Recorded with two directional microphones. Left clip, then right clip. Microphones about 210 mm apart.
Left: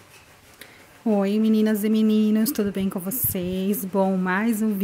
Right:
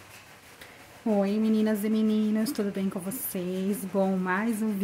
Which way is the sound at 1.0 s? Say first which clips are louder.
Left 4 dB; 30° left (ahead or behind).